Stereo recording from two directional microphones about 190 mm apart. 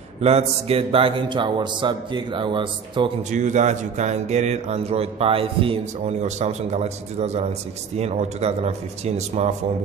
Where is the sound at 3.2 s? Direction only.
40° right (ahead or behind).